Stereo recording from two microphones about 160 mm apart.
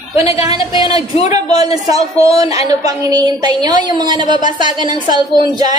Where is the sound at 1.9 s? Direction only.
20° right (ahead or behind).